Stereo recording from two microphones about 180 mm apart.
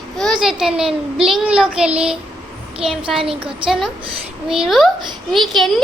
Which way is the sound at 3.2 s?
30° right (ahead or behind).